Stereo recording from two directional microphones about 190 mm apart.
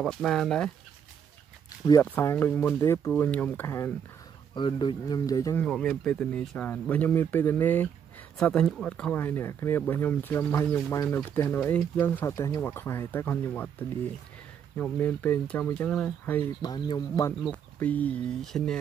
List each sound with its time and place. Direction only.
0.0 s speech: 5° left (ahead or behind)
2.1 s speech: 10° left (ahead or behind)
4.6 s speech: 25° left (ahead or behind)
5.7 s speech: 5° left (ahead or behind)
14.8 s speech: 10° left (ahead or behind)
16.6 s speech: 25° left (ahead or behind)
17.4 s speech: 5° left (ahead or behind)